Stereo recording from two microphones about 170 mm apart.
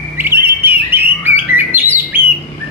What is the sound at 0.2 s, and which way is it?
Bird, 15° right (ahead or behind).